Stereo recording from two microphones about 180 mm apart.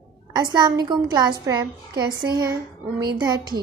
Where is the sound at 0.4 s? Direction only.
25° right (ahead or behind).